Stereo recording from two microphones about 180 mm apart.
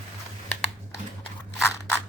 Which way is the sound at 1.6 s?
10° left (ahead or behind).